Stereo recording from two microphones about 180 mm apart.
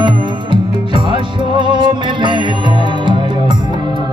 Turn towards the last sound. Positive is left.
turn(degrees=-25)  # may be behind; listen again after turning